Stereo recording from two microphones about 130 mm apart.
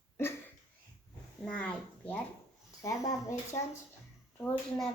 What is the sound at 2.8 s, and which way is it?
Speech, 25° left (ahead or behind).